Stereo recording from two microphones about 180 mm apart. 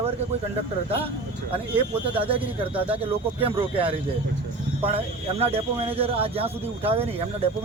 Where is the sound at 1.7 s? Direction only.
30° right (ahead or behind).